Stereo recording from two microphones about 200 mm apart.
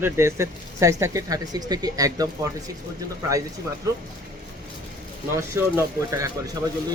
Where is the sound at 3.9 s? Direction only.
15° right (ahead or behind).